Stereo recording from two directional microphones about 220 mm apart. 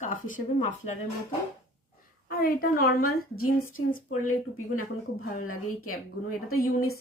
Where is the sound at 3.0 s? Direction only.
75° left (ahead or behind).